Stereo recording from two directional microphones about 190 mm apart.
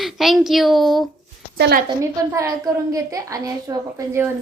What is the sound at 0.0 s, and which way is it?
A woman's voice, centre (ahead or behind).